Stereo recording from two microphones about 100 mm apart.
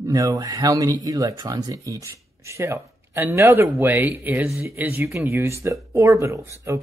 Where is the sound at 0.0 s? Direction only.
35° right (ahead or behind).